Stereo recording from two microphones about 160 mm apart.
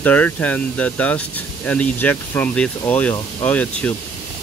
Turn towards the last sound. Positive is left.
turn(degrees=10)  # may be behind; listen again after turning